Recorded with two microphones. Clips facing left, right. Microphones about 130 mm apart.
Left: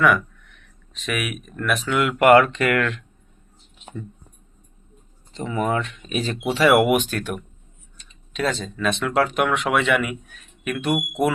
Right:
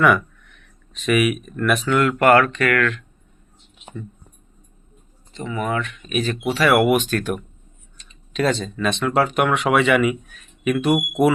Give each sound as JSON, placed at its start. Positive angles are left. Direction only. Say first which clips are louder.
{"t": 0.9, "sound": "speech", "louder": "right 9 dB", "side_deg": 0}
{"t": 5.3, "sound": "speech", "louder": "left 1 dB", "side_deg": 30}